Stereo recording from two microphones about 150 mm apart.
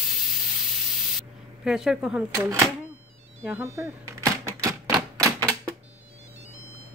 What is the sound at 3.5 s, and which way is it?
Typewriter, 15° right (ahead or behind).